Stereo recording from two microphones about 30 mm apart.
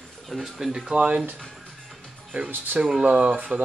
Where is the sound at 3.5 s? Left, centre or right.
Right.